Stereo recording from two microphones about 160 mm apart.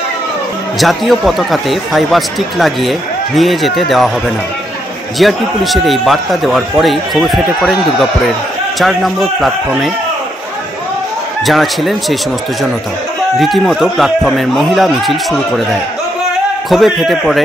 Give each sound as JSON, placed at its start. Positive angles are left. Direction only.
{"t": 0.7, "sound": "speech", "side_deg": 0}
{"t": 5.2, "sound": "speech", "side_deg": 0}
{"t": 11.4, "sound": "speech", "side_deg": 0}
{"t": 13.4, "sound": "speech", "side_deg": 0}
{"t": 16.6, "sound": "speech", "side_deg": 0}